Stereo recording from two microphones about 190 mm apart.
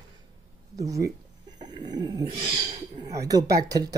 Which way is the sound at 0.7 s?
15° right (ahead or behind).